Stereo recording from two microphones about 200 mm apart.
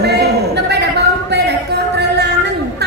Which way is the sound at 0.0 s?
55° right (ahead or behind).